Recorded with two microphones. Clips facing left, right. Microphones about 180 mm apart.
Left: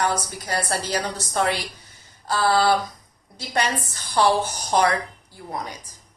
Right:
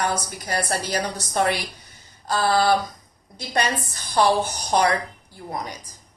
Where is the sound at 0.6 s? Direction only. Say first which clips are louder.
Even; 15° right (ahead or behind).